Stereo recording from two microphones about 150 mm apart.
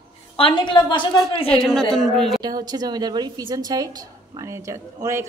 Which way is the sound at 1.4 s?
5° left (ahead or behind).